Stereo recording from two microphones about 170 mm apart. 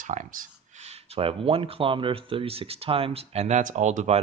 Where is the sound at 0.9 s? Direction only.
35° right (ahead or behind).